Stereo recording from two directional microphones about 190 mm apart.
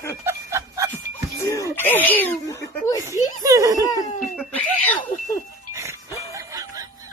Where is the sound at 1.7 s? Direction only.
10° left (ahead or behind).